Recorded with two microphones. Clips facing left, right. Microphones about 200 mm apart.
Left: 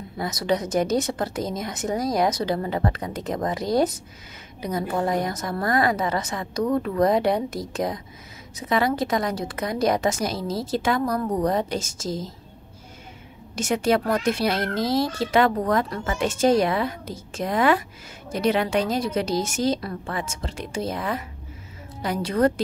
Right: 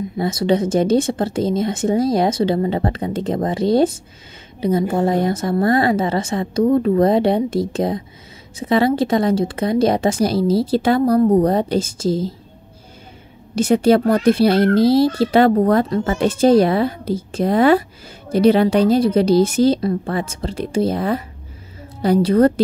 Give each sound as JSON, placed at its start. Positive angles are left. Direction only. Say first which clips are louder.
{"t": 0.2, "sound": "a woman's voice", "louder": "right 7 dB", "side_deg": -25}
{"t": 13.6, "sound": "a woman's voice", "louder": "right 8 dB", "side_deg": -35}